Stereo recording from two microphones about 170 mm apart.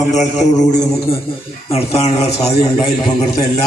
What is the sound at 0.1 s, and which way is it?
A man's voice, 45° left (ahead or behind).